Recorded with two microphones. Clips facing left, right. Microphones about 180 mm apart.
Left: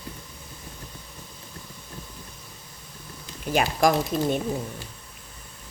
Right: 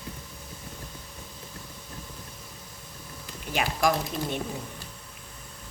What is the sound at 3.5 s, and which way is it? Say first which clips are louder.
Speech: left 4 dB; 45° left (ahead or behind).